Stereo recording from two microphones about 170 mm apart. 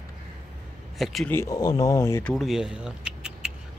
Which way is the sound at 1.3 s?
15° left (ahead or behind).